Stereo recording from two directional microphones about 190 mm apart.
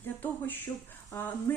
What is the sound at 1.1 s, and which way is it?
Speech, 15° left (ahead or behind).